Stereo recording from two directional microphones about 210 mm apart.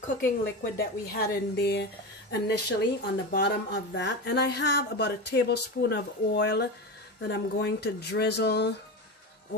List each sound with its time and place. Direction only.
0.0 s speech: 45° left (ahead or behind)